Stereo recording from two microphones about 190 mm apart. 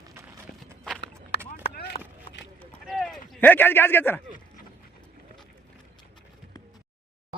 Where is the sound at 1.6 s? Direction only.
55° left (ahead or behind).